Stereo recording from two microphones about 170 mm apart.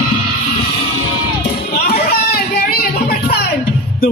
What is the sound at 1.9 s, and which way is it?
Music, 65° left (ahead or behind).